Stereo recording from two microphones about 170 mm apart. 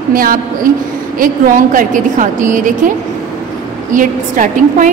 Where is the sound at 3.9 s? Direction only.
50° right (ahead or behind).